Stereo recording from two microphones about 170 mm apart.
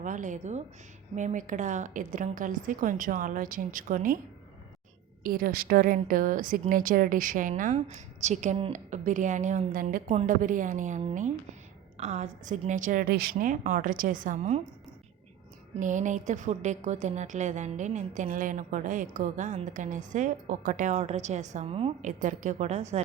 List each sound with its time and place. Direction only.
0.0 s a woman's voice: 50° right (ahead or behind)
5.2 s a woman's voice: 55° right (ahead or behind)
15.8 s a woman's voice: 45° right (ahead or behind)